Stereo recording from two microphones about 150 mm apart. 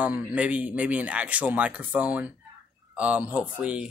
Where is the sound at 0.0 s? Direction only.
10° right (ahead or behind).